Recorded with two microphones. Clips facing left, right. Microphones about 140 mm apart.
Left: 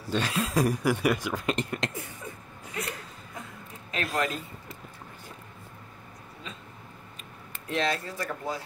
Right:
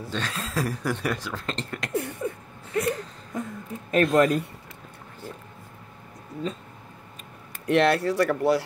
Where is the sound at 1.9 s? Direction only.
65° right (ahead or behind).